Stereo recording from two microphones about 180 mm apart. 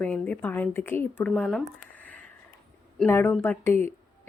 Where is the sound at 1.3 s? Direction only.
Centre (ahead or behind).